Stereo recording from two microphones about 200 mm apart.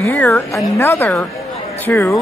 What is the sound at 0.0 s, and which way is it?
A man's voice, 10° left (ahead or behind).